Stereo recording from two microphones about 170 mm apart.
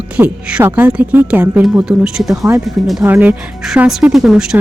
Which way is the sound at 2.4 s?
15° right (ahead or behind).